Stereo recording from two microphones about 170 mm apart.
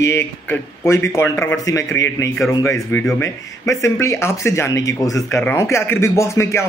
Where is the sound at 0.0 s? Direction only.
15° left (ahead or behind).